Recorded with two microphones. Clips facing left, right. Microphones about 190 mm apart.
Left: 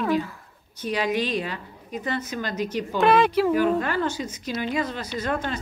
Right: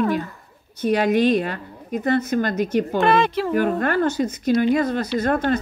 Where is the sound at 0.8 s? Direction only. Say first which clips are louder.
Right 7 dB; 55° right (ahead or behind).